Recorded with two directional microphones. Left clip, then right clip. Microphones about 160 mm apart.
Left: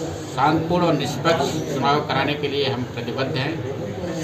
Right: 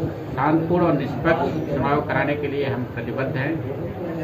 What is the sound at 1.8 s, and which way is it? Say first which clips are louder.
Speech: left 2 dB; 10° left (ahead or behind).